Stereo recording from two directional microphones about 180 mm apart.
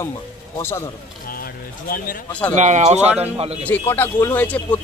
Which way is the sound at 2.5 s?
40° right (ahead or behind).